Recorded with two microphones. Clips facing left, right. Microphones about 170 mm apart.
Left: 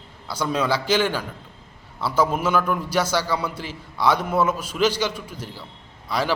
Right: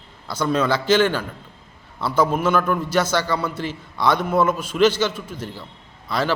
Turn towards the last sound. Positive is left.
turn(degrees=10)  # may be behind; listen again after turning